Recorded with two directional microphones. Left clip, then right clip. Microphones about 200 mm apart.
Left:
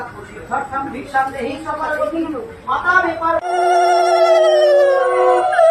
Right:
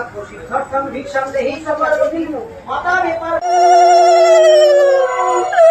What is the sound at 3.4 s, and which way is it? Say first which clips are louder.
Telephone bell ringing: right 7 dB; 10° left (ahead or behind).